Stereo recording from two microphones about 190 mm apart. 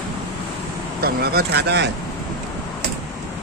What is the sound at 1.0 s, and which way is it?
Speech, 55° right (ahead or behind).